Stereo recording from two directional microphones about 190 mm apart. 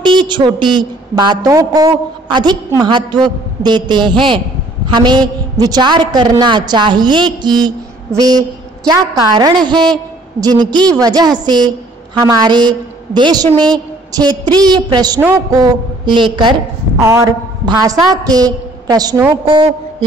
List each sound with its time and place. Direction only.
0.0 s a woman's voice: 25° right (ahead or behind)